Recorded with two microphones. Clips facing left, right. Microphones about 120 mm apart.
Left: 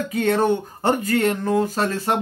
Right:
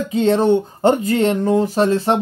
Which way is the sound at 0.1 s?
25° right (ahead or behind).